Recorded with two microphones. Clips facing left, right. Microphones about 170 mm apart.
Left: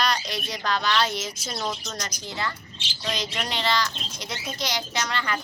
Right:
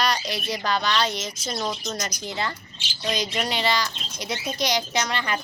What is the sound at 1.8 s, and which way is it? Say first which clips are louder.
Speech: right 4 dB; 10° right (ahead or behind).